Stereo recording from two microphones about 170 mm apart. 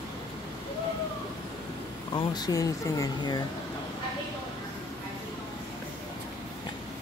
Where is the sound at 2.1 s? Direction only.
25° left (ahead or behind).